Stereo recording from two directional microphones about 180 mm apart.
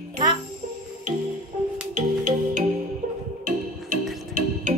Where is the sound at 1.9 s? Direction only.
45° right (ahead or behind).